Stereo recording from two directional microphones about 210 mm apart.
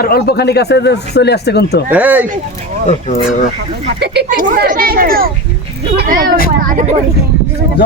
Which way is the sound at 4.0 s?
45° right (ahead or behind).